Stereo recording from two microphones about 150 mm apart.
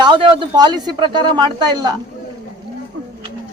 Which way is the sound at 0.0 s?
35° right (ahead or behind).